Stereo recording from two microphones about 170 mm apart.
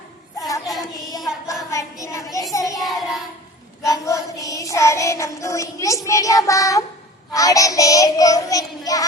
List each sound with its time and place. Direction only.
0.3 s child singing: 20° left (ahead or behind)
1.7 s child singing: 20° left (ahead or behind)
2.8 s child singing: centre (ahead or behind)
3.8 s child singing: 20° left (ahead or behind)